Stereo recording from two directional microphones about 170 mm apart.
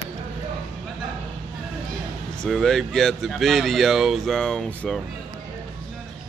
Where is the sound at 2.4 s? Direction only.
Centre (ahead or behind).